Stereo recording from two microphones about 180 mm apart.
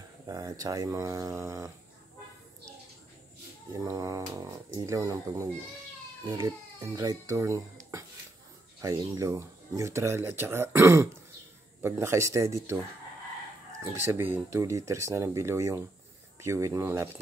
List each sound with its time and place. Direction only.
0.3 s speech: 20° right (ahead or behind)
3.7 s speech: 20° right (ahead or behind)
8.8 s speech: 20° right (ahead or behind)
13.8 s speech: 15° right (ahead or behind)